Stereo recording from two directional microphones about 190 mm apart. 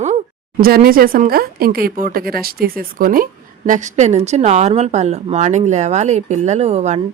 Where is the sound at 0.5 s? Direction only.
50° right (ahead or behind).